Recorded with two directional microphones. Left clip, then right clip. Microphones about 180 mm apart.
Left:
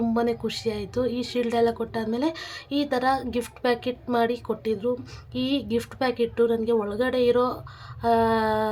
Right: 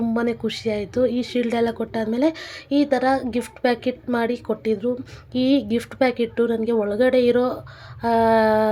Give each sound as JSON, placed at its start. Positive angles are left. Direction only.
{"t": 0.1, "sound": "speech", "side_deg": -10}